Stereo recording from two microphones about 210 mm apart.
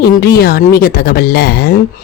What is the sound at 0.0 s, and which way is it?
Speech, 50° left (ahead or behind).